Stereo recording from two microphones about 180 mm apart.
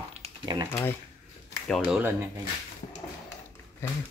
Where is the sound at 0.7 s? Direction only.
15° left (ahead or behind).